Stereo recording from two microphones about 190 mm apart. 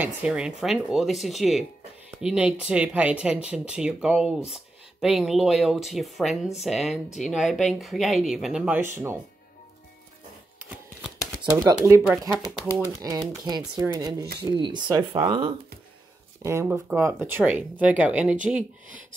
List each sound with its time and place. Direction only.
0.0 s speech: 5° right (ahead or behind)
11.5 s speech: 15° right (ahead or behind)
16.4 s speech: 15° right (ahead or behind)